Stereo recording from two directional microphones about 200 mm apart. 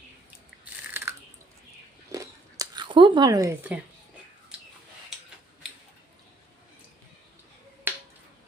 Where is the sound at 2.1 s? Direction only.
20° right (ahead or behind).